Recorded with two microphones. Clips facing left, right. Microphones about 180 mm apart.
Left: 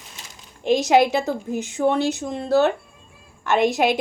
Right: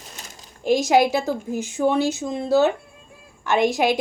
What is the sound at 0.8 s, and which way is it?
Speech, 5° right (ahead or behind).